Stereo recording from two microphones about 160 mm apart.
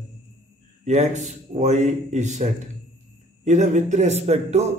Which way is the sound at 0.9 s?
45° right (ahead or behind).